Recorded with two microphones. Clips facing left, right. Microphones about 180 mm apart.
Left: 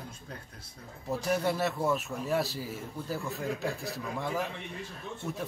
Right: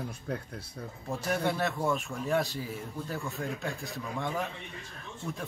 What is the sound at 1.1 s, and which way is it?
A man's voice, 5° left (ahead or behind).